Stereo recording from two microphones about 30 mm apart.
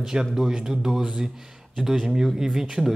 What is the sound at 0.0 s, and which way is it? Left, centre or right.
Speech, centre.